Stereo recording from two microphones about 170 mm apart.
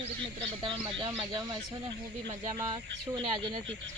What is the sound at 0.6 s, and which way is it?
Speech, 30° right (ahead or behind).